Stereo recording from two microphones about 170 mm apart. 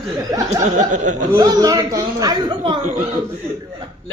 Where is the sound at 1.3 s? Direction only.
20° right (ahead or behind).